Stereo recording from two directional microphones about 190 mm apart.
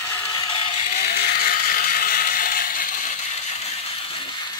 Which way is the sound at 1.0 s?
55° left (ahead or behind).